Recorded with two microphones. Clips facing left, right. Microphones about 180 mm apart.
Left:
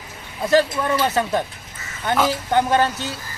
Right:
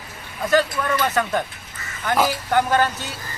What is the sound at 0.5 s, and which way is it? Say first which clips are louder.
Speech: left 2 dB; 25° left (ahead or behind).